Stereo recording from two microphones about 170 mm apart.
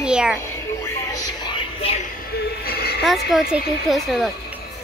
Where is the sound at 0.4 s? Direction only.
15° left (ahead or behind); by 2.0 s 30° left (ahead or behind).